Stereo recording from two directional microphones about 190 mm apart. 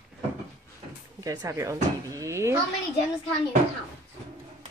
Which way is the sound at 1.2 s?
20° right (ahead or behind).